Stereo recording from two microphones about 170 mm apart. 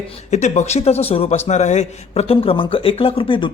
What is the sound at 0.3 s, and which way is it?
Speech, 45° left (ahead or behind).